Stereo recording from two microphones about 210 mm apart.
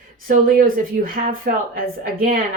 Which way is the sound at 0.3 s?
40° right (ahead or behind).